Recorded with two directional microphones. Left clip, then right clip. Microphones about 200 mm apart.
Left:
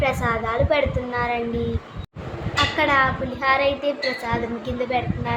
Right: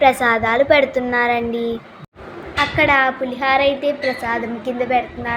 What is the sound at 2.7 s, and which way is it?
A woman's voice, 15° right (ahead or behind).